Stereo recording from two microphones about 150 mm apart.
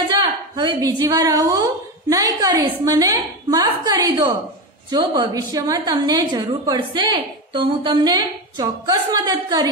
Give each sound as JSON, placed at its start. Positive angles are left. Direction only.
{"t": 0.2, "sound": "a woman's voice", "side_deg": -25}
{"t": 5.3, "sound": "a woman's voice", "side_deg": -25}